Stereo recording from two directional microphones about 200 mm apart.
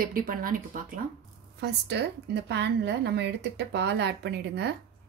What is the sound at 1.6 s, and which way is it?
Speech, 55° right (ahead or behind).